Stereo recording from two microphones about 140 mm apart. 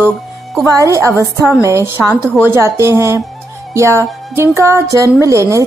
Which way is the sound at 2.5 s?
20° right (ahead or behind).